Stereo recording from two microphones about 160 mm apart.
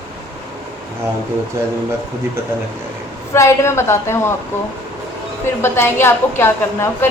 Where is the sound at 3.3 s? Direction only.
15° left (ahead or behind).